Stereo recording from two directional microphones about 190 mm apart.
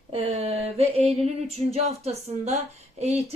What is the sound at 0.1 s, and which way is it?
Speech, 30° right (ahead or behind).